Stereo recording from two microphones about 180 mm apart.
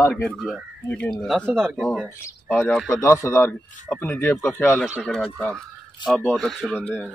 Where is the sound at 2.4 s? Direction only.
15° left (ahead or behind).